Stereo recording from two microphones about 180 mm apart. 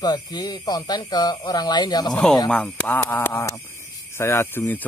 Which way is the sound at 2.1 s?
5° left (ahead or behind).